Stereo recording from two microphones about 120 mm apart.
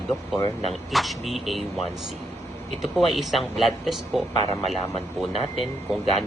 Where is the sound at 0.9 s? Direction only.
Centre (ahead or behind).